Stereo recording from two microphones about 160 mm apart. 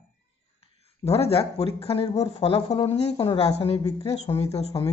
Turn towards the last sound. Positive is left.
turn(degrees=40)  # may be behind; listen again after turning